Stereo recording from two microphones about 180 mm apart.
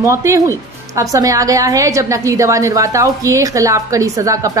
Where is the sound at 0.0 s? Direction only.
15° right (ahead or behind).